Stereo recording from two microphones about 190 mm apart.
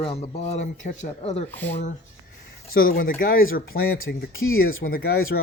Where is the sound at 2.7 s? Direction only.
50° left (ahead or behind); by 4.6 s 90° left.